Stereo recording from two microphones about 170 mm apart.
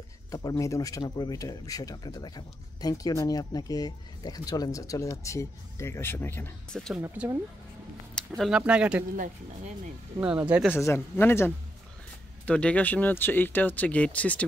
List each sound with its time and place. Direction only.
0.3 s speech: 20° left (ahead or behind); by 7.0 s 5° left (ahead or behind)
7.0 s speech: 15° right (ahead or behind)
8.4 s speech: 5° right (ahead or behind)
10.2 s speech: 10° right (ahead or behind)
10.7 s speech: 15° left (ahead or behind)